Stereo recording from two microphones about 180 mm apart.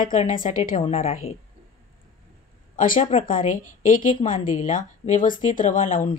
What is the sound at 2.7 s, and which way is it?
A woman's voice, 50° left (ahead or behind).